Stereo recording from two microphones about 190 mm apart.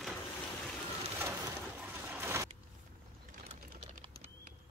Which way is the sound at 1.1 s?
15° right (ahead or behind).